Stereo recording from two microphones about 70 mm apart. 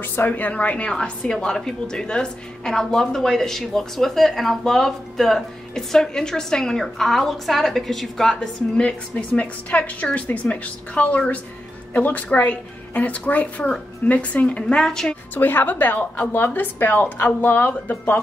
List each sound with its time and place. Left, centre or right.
0.0 s a woman's voice: left; by 8.4 s centre
8.4 s a woman's voice: centre
15.3 s a woman's voice: left